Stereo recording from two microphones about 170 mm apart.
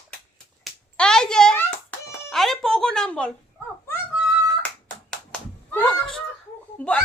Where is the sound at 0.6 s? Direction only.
5° left (ahead or behind).